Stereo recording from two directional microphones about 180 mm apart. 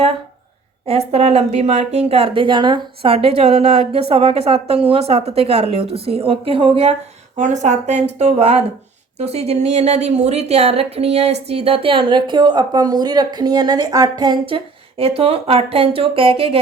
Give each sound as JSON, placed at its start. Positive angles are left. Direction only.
{"t": 0.9, "sound": "a woman's voice", "side_deg": -35}
{"t": 7.3, "sound": "a woman's voice", "side_deg": -40}